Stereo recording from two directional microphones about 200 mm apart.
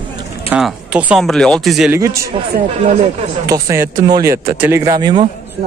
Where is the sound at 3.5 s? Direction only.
15° right (ahead or behind).